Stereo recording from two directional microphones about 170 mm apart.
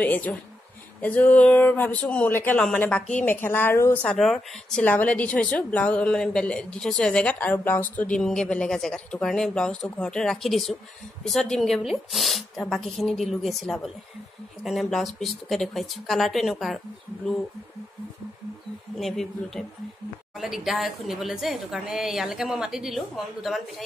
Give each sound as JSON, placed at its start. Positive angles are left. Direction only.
{"t": 0.0, "sound": "speech", "side_deg": 10}
{"t": 4.0, "sound": "a woman's voice", "side_deg": 5}
{"t": 18.9, "sound": "a woman's voice", "side_deg": 0}